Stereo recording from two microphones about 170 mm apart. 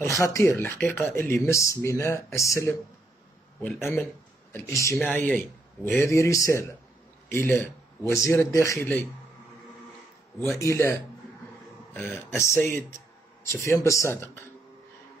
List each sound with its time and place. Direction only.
0.2 s speech: 15° left (ahead or behind)
10.4 s speech: 15° left (ahead or behind)